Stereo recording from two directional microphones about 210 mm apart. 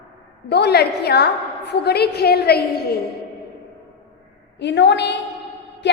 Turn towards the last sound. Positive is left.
turn(degrees=55)  # may be behind; listen again after turning